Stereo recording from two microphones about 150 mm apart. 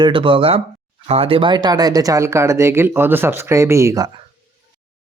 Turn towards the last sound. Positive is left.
turn(degrees=-20)  # may be behind; listen again after turning